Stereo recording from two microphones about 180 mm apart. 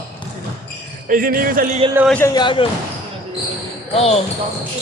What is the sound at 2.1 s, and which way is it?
Speech, 10° left (ahead or behind).